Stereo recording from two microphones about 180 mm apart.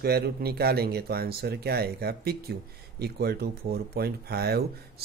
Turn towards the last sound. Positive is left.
turn(degrees=-60)  # may be behind; listen again after turning